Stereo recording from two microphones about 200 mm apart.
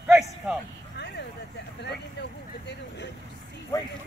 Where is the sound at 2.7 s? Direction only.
60° left (ahead or behind).